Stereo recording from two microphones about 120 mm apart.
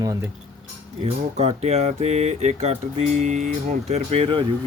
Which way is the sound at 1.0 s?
65° right (ahead or behind).